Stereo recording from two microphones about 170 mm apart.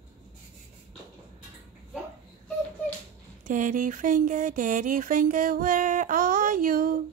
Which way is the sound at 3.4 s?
50° right (ahead or behind).